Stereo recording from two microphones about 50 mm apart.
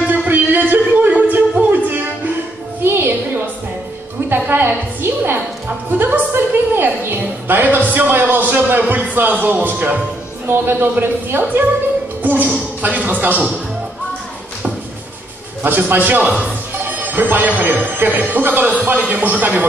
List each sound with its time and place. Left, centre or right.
0.3 s music: right
2.8 s music: right
4.3 s a woman's voice: right
5.9 s music: right
7.4 s speech: right
10.4 s a woman's voice: right
12.2 s a sound: right
12.8 s speech: right
15.6 s speech: right